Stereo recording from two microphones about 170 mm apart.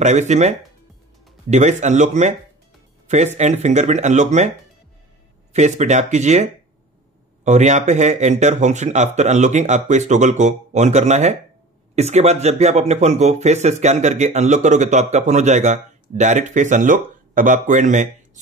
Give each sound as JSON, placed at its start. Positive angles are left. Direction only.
{"t": 0.0, "sound": "speech", "side_deg": -45}
{"t": 3.3, "sound": "speech", "side_deg": -40}
{"t": 5.5, "sound": "speech", "side_deg": -45}